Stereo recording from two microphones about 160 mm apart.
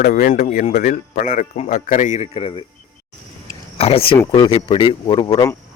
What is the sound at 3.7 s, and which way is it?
Speech, 40° left (ahead or behind).